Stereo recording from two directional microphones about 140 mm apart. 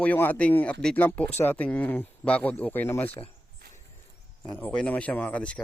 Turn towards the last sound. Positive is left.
turn(degrees=10)  # may be behind; listen again after turning